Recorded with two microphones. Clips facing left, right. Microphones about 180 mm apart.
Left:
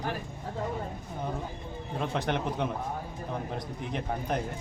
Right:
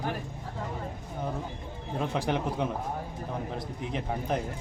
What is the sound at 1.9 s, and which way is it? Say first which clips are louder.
Speech: right 1 dB; 5° right (ahead or behind).